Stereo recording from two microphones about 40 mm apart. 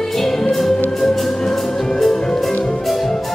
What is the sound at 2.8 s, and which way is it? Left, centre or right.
Music, centre.